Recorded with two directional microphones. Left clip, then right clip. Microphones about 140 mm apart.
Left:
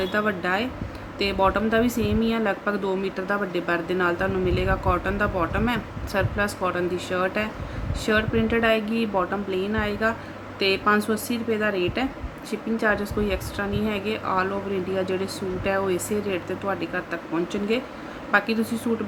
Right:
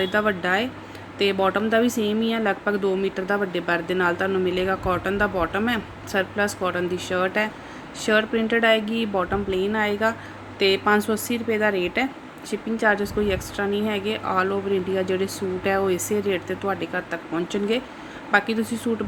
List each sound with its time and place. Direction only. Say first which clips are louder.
0.0 s speech: right 2 dB; 15° right (ahead or behind)